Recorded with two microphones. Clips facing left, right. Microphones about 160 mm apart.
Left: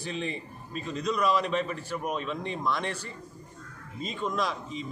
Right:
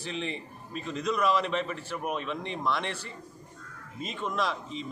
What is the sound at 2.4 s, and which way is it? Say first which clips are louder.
Speech: even; 40° left (ahead or behind).